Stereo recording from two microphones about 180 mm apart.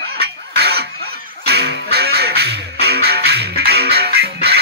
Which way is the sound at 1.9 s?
60° right (ahead or behind).